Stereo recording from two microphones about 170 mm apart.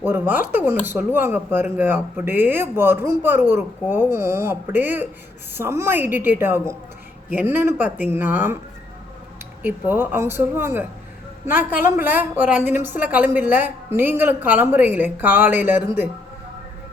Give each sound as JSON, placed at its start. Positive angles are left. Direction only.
{"t": 0.0, "sound": "a woman's voice", "side_deg": -10}
{"t": 9.6, "sound": "a woman's voice", "side_deg": -10}